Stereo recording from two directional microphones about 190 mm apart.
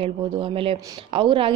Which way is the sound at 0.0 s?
30° right (ahead or behind).